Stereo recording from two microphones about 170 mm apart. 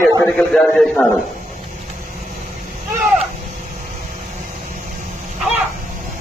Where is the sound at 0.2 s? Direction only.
5° left (ahead or behind).